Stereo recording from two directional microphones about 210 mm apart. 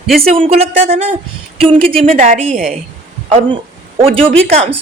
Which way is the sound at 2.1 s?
40° right (ahead or behind).